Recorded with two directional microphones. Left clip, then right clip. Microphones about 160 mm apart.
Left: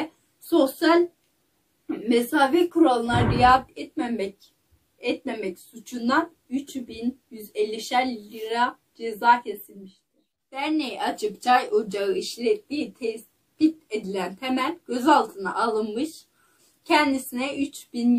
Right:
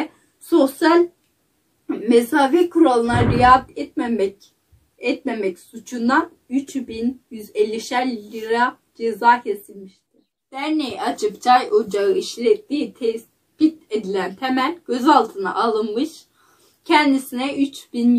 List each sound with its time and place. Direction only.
0.5 s a sound: 10° left (ahead or behind)
1.9 s speech: 10° left (ahead or behind)
10.5 s speech: 15° left (ahead or behind)